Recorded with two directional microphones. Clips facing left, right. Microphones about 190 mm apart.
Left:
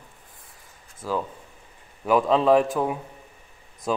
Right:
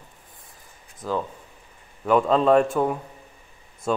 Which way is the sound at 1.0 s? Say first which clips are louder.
Right 1 dB; 5° left (ahead or behind).